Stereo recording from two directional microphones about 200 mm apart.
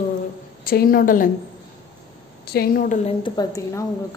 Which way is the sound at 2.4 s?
50° left (ahead or behind).